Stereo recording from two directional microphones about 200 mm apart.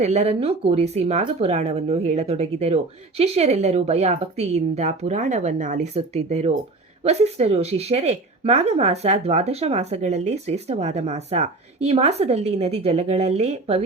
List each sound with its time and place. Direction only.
0.0 s speech: 35° right (ahead or behind)